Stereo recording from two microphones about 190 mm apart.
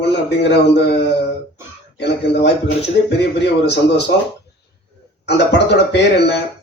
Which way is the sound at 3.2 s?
60° left (ahead or behind).